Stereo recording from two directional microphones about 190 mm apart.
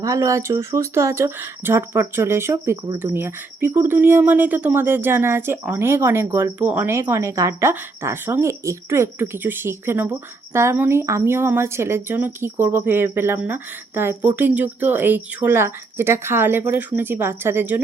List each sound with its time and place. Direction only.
0.0 s speech: 15° right (ahead or behind)